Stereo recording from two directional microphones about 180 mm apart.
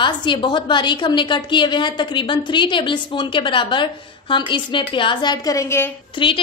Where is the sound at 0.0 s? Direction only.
25° left (ahead or behind).